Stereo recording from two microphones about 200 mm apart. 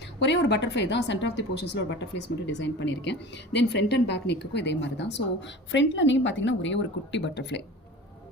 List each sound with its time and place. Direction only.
0.2 s a woman's voice: 60° left (ahead or behind)